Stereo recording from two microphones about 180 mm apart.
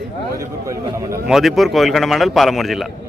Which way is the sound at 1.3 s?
Centre (ahead or behind).